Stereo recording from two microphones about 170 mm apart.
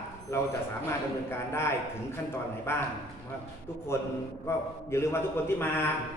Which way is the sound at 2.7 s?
15° left (ahead or behind).